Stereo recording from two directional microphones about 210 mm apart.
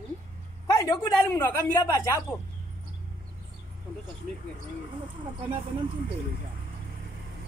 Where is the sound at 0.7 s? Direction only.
15° left (ahead or behind).